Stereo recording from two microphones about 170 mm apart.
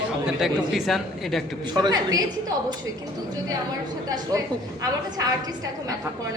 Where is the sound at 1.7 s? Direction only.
25° right (ahead or behind).